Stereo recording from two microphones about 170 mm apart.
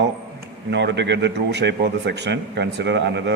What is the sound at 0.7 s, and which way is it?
A man's voice, 90° right.